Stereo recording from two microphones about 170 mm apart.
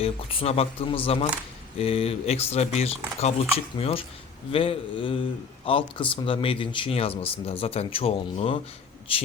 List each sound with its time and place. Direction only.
0.0 s speech: 35° left (ahead or behind)